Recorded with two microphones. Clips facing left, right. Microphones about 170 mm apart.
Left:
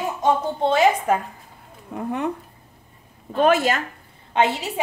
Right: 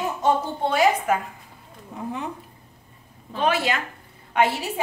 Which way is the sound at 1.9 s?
60° left (ahead or behind).